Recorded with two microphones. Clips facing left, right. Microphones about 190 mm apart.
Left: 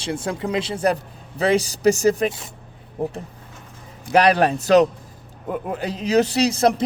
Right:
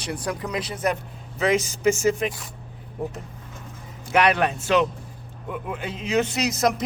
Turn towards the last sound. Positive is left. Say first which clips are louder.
# left 5 dB
turn(degrees=30)  # may be behind; listen again after turning